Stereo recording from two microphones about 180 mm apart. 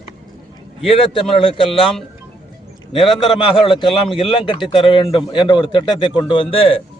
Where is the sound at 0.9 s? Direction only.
30° left (ahead or behind).